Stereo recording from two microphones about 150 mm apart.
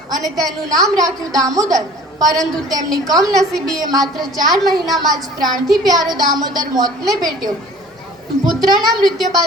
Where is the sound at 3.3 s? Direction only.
5° left (ahead or behind).